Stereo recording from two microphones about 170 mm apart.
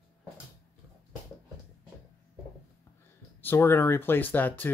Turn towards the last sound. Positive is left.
turn(degrees=10)  # may be behind; listen again after turning